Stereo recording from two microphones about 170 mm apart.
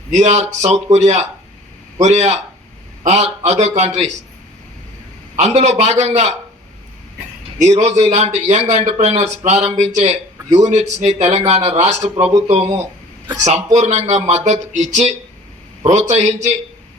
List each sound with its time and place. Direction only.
0.1 s speech: 45° right (ahead or behind)
5.4 s speech: 40° right (ahead or behind)
7.6 s speech: 40° right (ahead or behind)